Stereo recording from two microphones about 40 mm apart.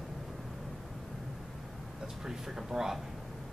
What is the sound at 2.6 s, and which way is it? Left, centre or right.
Speech, centre.